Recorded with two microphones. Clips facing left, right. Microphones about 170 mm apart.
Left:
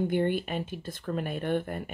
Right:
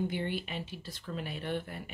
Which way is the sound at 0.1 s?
50° left (ahead or behind).